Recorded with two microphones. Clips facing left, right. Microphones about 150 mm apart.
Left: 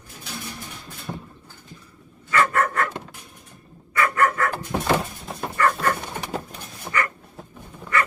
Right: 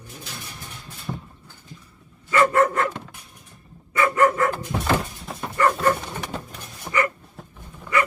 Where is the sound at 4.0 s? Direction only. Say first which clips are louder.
Right 2 dB; 20° right (ahead or behind).